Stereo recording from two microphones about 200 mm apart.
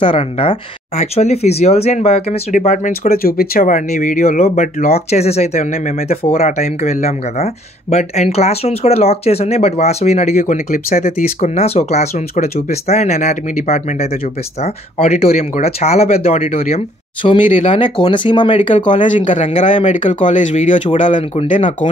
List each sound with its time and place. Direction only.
0.0 s speech: 25° left (ahead or behind); by 11.2 s 45° left (ahead or behind)
11.4 s speech: 30° left (ahead or behind)
18.9 s speech: 40° left (ahead or behind)